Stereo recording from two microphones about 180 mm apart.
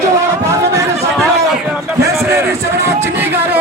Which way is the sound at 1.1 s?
5° right (ahead or behind).